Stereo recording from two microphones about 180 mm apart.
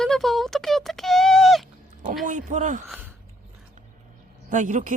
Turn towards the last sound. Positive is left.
turn(degrees=-45)  # may be behind; listen again after turning